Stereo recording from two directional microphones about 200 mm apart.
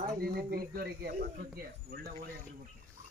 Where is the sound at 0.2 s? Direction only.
50° right (ahead or behind).